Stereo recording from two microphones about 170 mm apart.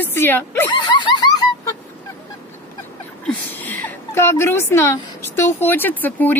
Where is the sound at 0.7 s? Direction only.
25° left (ahead or behind).